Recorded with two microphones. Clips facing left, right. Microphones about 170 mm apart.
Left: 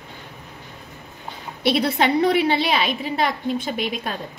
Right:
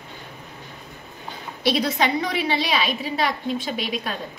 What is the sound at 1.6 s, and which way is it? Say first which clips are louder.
A woman's voice: left 2 dB; 60° left (ahead or behind).